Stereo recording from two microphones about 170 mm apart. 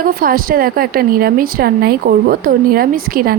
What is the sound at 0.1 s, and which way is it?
A woman's voice, 55° right (ahead or behind).